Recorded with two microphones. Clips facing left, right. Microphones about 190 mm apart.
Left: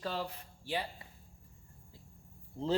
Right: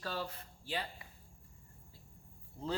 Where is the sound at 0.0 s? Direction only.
15° left (ahead or behind).